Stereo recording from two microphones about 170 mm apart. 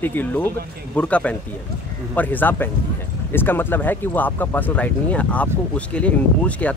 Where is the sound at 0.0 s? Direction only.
10° left (ahead or behind).